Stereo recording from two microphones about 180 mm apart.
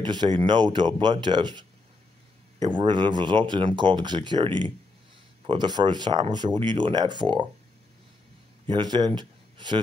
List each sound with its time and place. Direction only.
0.0 s speech: 25° right (ahead or behind)
8.6 s speech: 25° right (ahead or behind)